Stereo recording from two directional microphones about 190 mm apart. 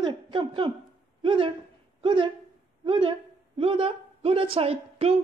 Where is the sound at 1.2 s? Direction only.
25° right (ahead or behind).